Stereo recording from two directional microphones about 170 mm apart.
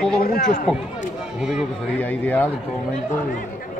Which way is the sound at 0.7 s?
5° left (ahead or behind).